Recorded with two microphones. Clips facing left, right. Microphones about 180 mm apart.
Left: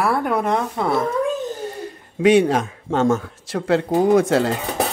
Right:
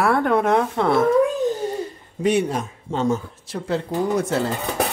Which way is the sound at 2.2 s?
90° left.